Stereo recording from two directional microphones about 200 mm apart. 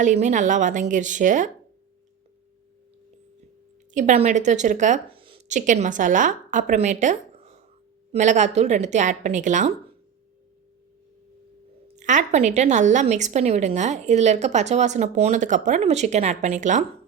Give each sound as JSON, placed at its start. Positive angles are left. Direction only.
{"t": 0.0, "sound": "a woman's voice", "side_deg": -35}
{"t": 3.9, "sound": "a woman's voice", "side_deg": -35}
{"t": 5.2, "sound": "a sound", "side_deg": -25}
{"t": 5.5, "sound": "a woman's voice", "side_deg": -35}
{"t": 11.9, "sound": "a woman's voice", "side_deg": -35}